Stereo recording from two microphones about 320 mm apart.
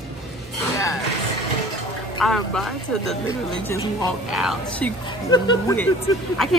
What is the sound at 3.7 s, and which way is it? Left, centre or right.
Speech, centre.